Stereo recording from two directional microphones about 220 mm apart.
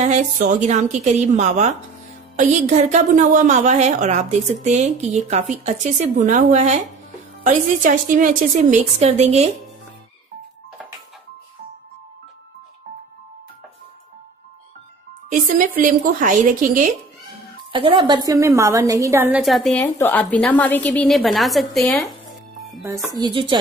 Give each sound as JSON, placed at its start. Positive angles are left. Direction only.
{"t": 0.0, "sound": "a woman's voice", "side_deg": -35}
{"t": 15.2, "sound": "a woman's voice", "side_deg": -40}
{"t": 17.7, "sound": "a woman's voice", "side_deg": -20}
{"t": 23.1, "sound": "speech", "side_deg": -20}